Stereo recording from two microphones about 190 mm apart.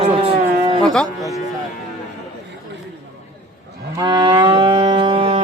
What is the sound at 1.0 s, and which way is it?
Speech, 15° right (ahead or behind).